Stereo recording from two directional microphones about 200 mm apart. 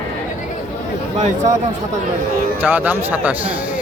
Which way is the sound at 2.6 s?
10° right (ahead or behind).